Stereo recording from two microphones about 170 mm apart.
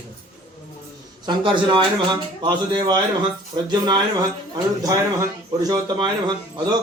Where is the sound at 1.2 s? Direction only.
30° right (ahead or behind).